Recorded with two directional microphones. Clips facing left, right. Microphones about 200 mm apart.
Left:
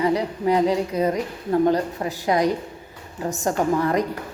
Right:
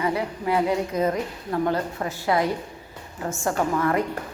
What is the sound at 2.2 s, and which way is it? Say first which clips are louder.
A woman's voice: left 3 dB; 15° left (ahead or behind).